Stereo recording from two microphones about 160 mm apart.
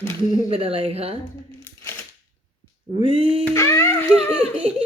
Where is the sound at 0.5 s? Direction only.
40° right (ahead or behind).